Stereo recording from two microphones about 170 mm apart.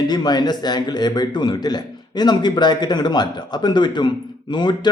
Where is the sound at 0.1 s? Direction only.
25° left (ahead or behind).